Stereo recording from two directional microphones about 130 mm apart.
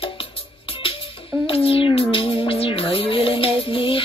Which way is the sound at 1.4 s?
45° left (ahead or behind).